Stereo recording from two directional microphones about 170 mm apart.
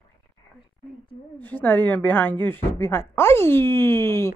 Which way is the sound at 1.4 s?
10° left (ahead or behind).